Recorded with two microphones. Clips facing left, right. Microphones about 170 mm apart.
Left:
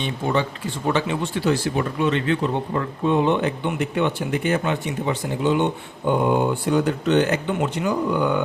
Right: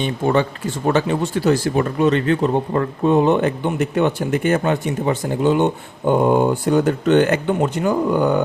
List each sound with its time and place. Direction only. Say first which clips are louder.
0.0 s speech: right 5 dB; 50° right (ahead or behind)